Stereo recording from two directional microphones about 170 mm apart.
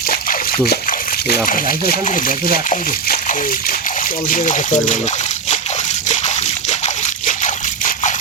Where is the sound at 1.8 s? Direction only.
55° left (ahead or behind).